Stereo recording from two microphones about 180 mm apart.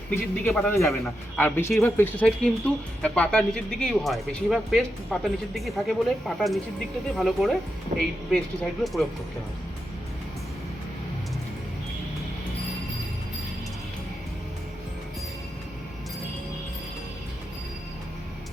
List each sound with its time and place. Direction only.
0.1 s a man's voice: 10° left (ahead or behind)
7.9 s speech: 45° right (ahead or behind)
8.8 s speech: centre (ahead or behind)